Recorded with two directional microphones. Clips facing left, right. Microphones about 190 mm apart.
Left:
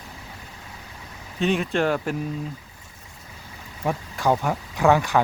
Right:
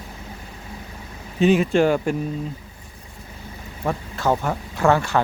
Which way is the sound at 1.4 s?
Centre (ahead or behind).